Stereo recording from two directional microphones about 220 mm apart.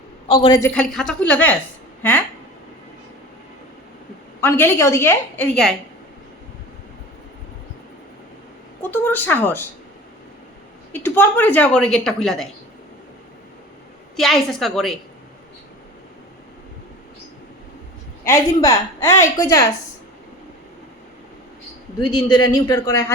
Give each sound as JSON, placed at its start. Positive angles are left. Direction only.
{"t": 0.3, "sound": "a man's voice", "side_deg": 20}
{"t": 0.7, "sound": "a woman's voice", "side_deg": 5}
{"t": 4.4, "sound": "a woman's voice", "side_deg": 10}
{"t": 8.8, "sound": "a woman's voice", "side_deg": 10}
{"t": 10.9, "sound": "a woman's voice", "side_deg": 10}
{"t": 14.2, "sound": "a woman's voice", "side_deg": 0}
{"t": 18.3, "sound": "a woman's voice", "side_deg": 15}
{"t": 22.3, "sound": "a woman's voice", "side_deg": 15}